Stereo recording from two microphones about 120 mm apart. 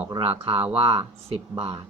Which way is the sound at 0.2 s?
50° right (ahead or behind).